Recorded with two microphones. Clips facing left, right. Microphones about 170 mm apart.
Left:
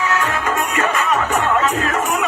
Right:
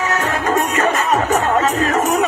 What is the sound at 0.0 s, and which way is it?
Music, 40° right (ahead or behind).